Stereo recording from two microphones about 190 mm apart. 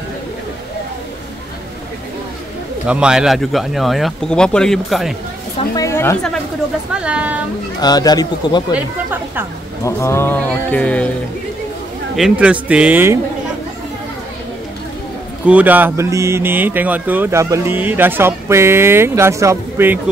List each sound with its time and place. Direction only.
2.9 s speech: 5° right (ahead or behind)
5.8 s a sound: 15° left (ahead or behind)
6.9 s speech: 5° right (ahead or behind)
7.8 s speech: 20° left (ahead or behind)
8.7 s speech: 10° right (ahead or behind)
9.8 s speech: 15° left (ahead or behind)
12.2 s speech: 5° right (ahead or behind)
15.4 s speech: 10° right (ahead or behind)